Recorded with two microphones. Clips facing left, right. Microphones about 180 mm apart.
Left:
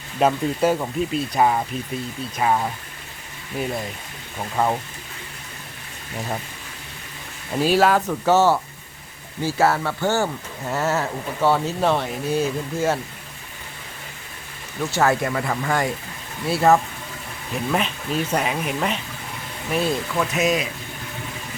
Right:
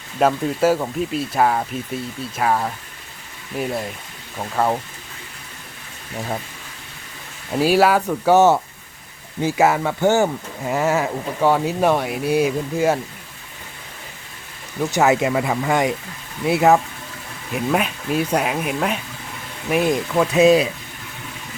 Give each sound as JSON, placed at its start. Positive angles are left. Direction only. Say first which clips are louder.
{"t": 0.2, "sound": "speech", "louder": "right 2 dB", "side_deg": 0}
{"t": 7.5, "sound": "speech", "louder": "right 2 dB", "side_deg": -10}
{"t": 14.8, "sound": "speech", "louder": "right 3 dB", "side_deg": -15}
{"t": 19.7, "sound": "speech", "louder": "right 4 dB", "side_deg": -15}
{"t": 20.1, "sound": "speech", "louder": "right 10 dB", "side_deg": -30}